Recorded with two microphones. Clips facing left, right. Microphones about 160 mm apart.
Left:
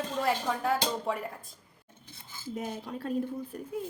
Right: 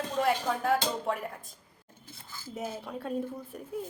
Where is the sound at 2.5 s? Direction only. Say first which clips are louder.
Even; centre (ahead or behind).